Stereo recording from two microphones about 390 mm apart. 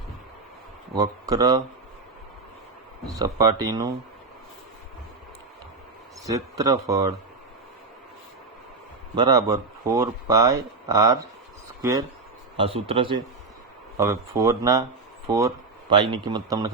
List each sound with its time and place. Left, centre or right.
0.9 s speech: centre
3.1 s speech: centre
6.2 s speech: centre
9.1 s speech: centre